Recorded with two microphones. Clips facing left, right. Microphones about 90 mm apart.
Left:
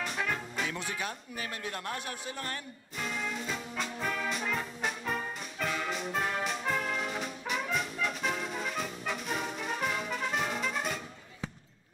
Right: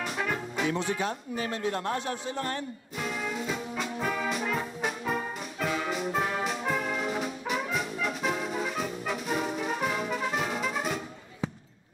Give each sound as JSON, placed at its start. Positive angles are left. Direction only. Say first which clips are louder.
{"t": 0.0, "sound": "music", "louder": "right 3 dB", "side_deg": -5}
{"t": 0.7, "sound": "a man's voice", "louder": "right 7 dB", "side_deg": -25}
{"t": 3.0, "sound": "music", "louder": "right 3 dB", "side_deg": -5}